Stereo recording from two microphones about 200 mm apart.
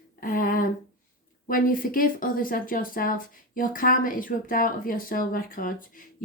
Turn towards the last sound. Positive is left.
turn(degrees=45)  # may be behind; listen again after turning